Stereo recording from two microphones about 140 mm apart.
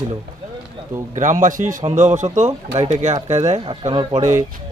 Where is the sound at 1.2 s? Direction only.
65° right (ahead or behind).